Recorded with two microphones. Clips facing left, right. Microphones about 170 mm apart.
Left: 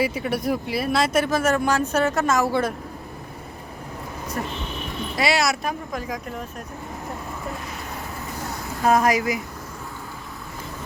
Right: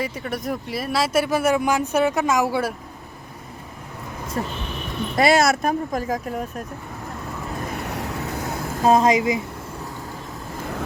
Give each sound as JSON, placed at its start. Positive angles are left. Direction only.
{"t": 0.0, "sound": "speech", "side_deg": 5}
{"t": 4.4, "sound": "speech", "side_deg": -25}
{"t": 5.1, "sound": "speech", "side_deg": -50}
{"t": 7.7, "sound": "vehicle", "side_deg": -65}
{"t": 8.8, "sound": "speech", "side_deg": -25}